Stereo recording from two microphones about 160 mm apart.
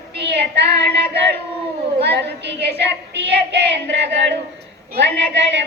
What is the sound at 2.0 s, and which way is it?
Child singing, 90° right.